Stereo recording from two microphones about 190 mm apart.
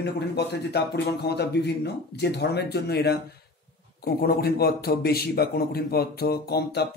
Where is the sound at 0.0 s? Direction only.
60° left (ahead or behind).